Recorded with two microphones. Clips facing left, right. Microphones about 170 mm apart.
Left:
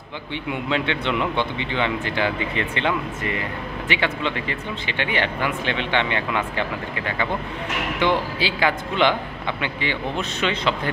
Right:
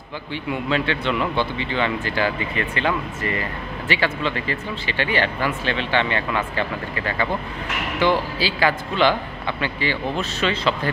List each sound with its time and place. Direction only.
0.5 s a man's voice: 20° left (ahead or behind)
8.0 s a man's voice: 20° left (ahead or behind)